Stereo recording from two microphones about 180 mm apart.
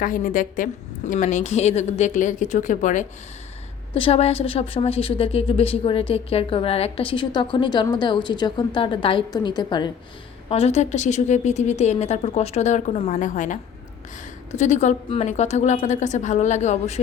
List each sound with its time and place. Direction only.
0.0 s a woman's voice: 50° left (ahead or behind)
3.9 s a woman's voice: 30° left (ahead or behind)
10.5 s a woman's voice: 35° left (ahead or behind)